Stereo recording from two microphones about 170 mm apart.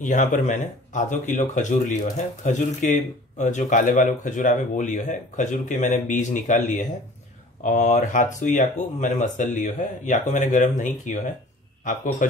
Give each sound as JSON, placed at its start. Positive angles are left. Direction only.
{"t": 0.0, "sound": "speech", "side_deg": 50}